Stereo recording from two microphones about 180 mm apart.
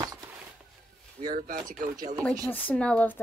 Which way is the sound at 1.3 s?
45° right (ahead or behind).